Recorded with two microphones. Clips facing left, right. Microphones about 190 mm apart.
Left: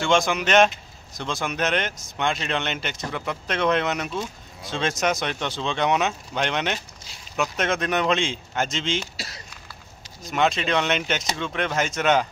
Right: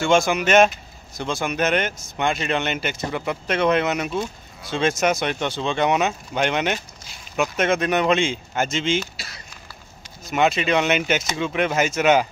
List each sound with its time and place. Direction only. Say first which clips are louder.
0.0 s speech: right 3 dB; 5° right (ahead or behind)
9.1 s speech: left 2 dB; 40° left (ahead or behind)
10.2 s speech: right 3 dB; 5° right (ahead or behind)